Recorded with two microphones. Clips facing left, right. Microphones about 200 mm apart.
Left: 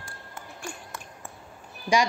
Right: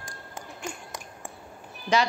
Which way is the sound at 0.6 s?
20° right (ahead or behind).